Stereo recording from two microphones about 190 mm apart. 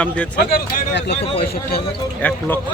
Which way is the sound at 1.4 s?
55° left (ahead or behind).